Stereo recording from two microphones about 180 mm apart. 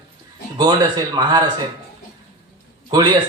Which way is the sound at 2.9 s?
25° right (ahead or behind).